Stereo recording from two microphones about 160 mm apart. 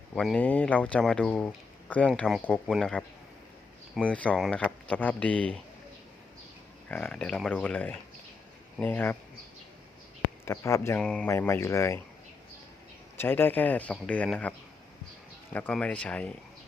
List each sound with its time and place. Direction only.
0.1 s speech: 5° left (ahead or behind)
4.0 s speech: 10° left (ahead or behind)
6.8 s speech: 5° left (ahead or behind)
10.4 s speech: 15° left (ahead or behind)
11.0 s speech: 5° left (ahead or behind)
11.3 s speech: 15° left (ahead or behind)
13.1 s speech: 15° left (ahead or behind)
15.5 s speech: 10° left (ahead or behind)